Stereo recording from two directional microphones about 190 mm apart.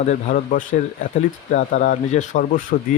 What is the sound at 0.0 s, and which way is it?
Speech, 40° left (ahead or behind).